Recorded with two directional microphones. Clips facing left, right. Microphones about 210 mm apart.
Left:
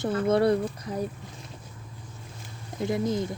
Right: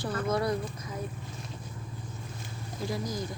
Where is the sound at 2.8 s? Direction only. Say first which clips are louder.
Left 7 dB; 25° left (ahead or behind).